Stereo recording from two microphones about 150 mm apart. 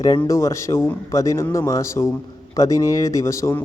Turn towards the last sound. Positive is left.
turn(degrees=20)  # may be behind; listen again after turning